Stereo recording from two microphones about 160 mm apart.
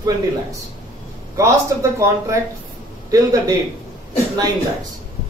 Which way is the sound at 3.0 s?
20° right (ahead or behind).